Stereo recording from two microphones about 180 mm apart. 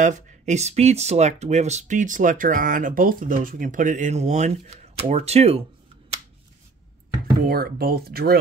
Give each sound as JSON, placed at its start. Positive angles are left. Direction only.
{"t": 0.0, "sound": "speech", "side_deg": -40}
{"t": 7.4, "sound": "speech", "side_deg": -55}